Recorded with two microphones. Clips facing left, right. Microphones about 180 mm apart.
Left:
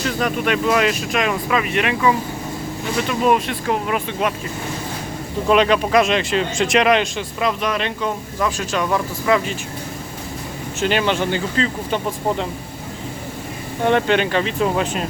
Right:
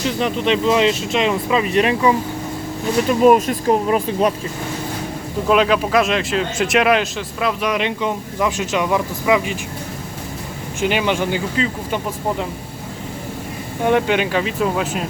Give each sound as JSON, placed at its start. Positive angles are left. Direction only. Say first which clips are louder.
{"t": 0.0, "sound": "speech", "louder": "right 1 dB", "side_deg": -25}
{"t": 3.1, "sound": "speech", "louder": "right 6 dB", "side_deg": -45}
{"t": 5.5, "sound": "speech", "louder": "even", "side_deg": -5}
{"t": 7.7, "sound": "speech", "louder": "right 2 dB", "side_deg": -15}
{"t": 10.8, "sound": "speech", "louder": "even", "side_deg": -10}
{"t": 13.8, "sound": "speech", "louder": "even", "side_deg": -10}